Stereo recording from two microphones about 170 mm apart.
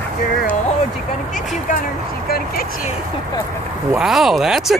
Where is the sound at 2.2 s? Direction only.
60° left (ahead or behind).